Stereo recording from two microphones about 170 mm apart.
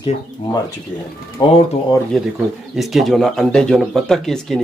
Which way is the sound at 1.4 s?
25° left (ahead or behind).